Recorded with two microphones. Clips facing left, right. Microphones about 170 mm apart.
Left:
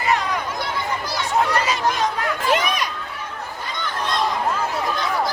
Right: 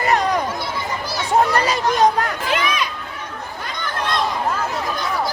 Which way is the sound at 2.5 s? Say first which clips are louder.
Right 1 dB; 40° left (ahead or behind).